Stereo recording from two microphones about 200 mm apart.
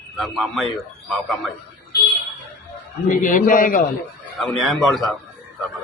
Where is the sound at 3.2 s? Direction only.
40° left (ahead or behind).